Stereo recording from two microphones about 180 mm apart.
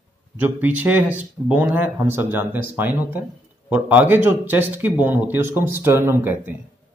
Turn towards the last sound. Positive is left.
turn(degrees=-15)  # may be behind; listen again after turning